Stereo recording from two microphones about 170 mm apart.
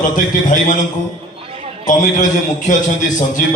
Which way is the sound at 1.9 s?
45° left (ahead or behind).